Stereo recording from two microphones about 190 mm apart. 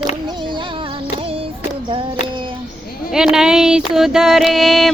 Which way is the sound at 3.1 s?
5° right (ahead or behind).